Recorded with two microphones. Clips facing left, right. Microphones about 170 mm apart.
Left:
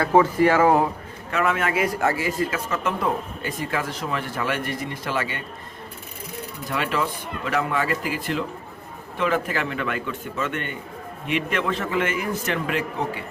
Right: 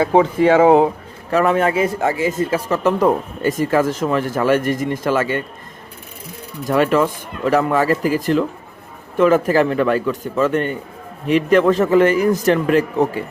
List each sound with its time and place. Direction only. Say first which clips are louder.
0.0 s a man's voice: right 4 dB; 20° right (ahead or behind)
1.3 s a man's voice: right 7 dB; 35° right (ahead or behind)
2.6 s speech: right 9 dB; 40° right (ahead or behind)
6.7 s a man's voice: right 10 dB; 45° right (ahead or behind)